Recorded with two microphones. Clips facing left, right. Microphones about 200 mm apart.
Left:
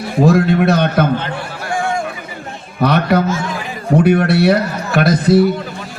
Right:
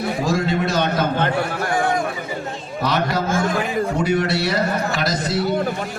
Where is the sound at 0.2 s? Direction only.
60° left (ahead or behind).